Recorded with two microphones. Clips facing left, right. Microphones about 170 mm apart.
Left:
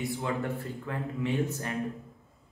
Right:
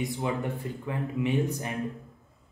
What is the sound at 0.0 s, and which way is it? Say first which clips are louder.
A man's voice: right 2 dB; 20° right (ahead or behind).